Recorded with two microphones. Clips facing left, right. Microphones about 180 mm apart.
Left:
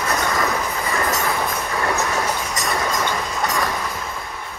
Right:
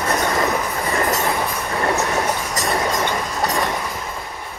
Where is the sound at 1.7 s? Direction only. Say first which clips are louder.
Right 3 dB; 25° right (ahead or behind).